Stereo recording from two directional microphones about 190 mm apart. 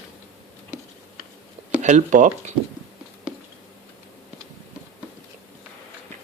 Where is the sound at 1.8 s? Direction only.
40° right (ahead or behind).